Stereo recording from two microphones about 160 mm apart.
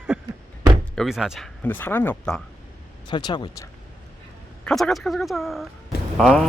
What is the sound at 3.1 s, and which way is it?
Speech, 30° left (ahead or behind).